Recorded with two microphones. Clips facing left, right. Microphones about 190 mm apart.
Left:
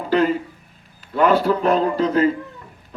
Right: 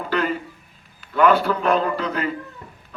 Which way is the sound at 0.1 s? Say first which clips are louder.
Left 6 dB; 30° left (ahead or behind).